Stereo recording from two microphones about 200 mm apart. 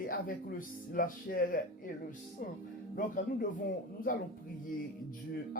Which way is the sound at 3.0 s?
40° left (ahead or behind).